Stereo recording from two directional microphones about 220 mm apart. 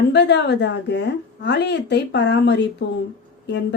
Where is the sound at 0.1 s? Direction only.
50° left (ahead or behind).